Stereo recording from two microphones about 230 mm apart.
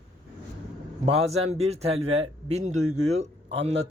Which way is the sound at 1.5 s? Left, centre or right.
Right.